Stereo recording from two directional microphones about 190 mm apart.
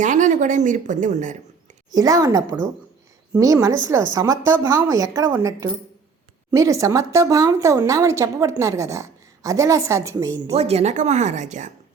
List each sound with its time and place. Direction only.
0.0 s a woman's voice: 40° right (ahead or behind)
1.9 s a woman's voice: 20° right (ahead or behind)
10.5 s a woman's voice: 35° right (ahead or behind)